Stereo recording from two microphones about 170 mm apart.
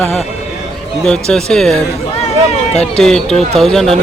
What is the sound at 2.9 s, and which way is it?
Speech, 5° left (ahead or behind).